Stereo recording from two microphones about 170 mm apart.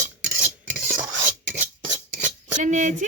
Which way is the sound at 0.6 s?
10° right (ahead or behind).